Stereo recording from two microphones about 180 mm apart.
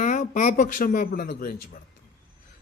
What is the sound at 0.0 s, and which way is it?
Speech, 45° left (ahead or behind).